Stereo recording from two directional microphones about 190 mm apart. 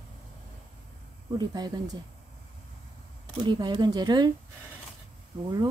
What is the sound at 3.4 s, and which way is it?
Speech, 20° right (ahead or behind).